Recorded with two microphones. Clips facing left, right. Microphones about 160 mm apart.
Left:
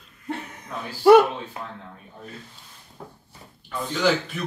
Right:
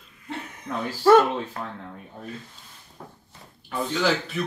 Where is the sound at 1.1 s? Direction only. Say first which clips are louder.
Left 3 dB; 15° left (ahead or behind).